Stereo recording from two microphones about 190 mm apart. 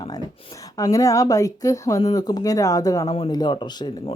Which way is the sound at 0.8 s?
20° left (ahead or behind).